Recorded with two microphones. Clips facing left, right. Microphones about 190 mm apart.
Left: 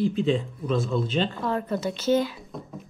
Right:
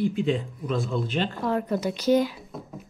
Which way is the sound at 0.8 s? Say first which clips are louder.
Left 1 dB; centre (ahead or behind).